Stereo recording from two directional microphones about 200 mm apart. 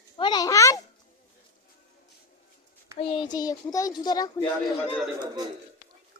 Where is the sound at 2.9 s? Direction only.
30° left (ahead or behind).